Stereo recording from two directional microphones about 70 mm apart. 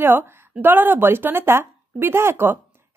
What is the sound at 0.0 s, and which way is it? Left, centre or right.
A woman's voice, right.